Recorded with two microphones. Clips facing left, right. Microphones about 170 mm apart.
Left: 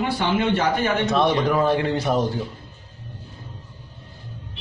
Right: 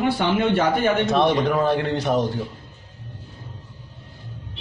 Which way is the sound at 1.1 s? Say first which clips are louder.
Right 1 dB; centre (ahead or behind).